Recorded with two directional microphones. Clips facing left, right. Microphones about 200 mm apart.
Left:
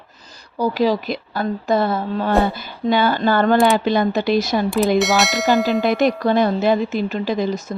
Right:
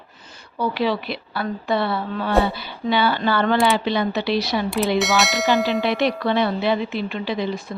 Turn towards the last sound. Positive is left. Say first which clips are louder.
# left 4 dB
turn(degrees=45)  # may be behind; listen again after turning